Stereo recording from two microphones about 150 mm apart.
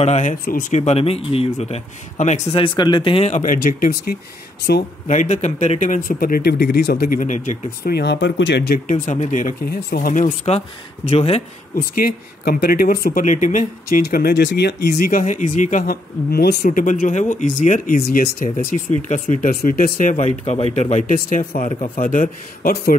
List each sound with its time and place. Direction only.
0.0 s a man's voice: 55° left (ahead or behind)
0.7 s speech: 45° left (ahead or behind)
2.6 s speech: 30° left (ahead or behind)
3.3 s speech: 65° left (ahead or behind)
5.0 s speech: 55° left (ahead or behind); by 8.1 s 85° left
8.5 s a man's voice: 65° left (ahead or behind); by 11.4 s 45° left (ahead or behind)
11.7 s speech: 75° left (ahead or behind)
13.2 s speech: 55° left (ahead or behind); by 16.5 s 90° left
16.6 s a man's voice: 60° left (ahead or behind)
18.9 s a man's voice: 55° left (ahead or behind)
19.4 s speech: 70° left (ahead or behind)
20.7 s a man's voice: 50° left (ahead or behind); by 22.9 s 90° left